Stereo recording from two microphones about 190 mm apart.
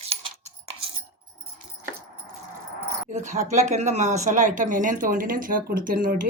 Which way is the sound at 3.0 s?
40° right (ahead or behind).